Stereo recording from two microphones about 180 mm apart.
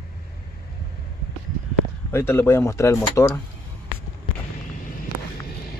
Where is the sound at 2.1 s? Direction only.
15° left (ahead or behind).